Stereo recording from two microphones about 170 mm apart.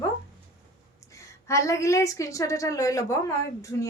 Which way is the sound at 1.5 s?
15° left (ahead or behind).